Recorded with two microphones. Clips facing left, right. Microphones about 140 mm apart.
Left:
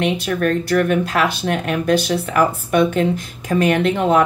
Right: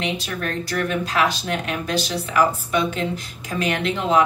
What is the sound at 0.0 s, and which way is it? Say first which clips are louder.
Speech: left 8 dB; 55° left (ahead or behind).